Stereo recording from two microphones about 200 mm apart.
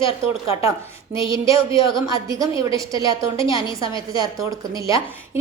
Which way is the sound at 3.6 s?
25° left (ahead or behind).